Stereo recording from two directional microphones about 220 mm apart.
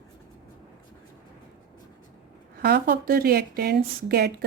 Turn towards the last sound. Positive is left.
turn(degrees=-45)  # may be behind; listen again after turning